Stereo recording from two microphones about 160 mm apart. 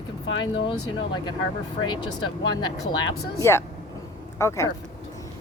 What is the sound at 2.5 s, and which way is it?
Speech, 25° left (ahead or behind).